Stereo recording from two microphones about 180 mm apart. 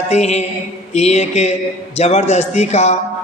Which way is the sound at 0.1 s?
35° left (ahead or behind).